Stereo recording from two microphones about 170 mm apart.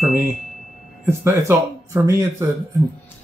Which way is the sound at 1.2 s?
15° right (ahead or behind).